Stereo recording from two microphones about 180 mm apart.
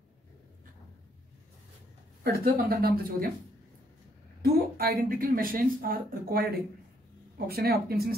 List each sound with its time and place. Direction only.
2.2 s speech: 55° right (ahead or behind)
4.4 s a woman's voice: 55° right (ahead or behind)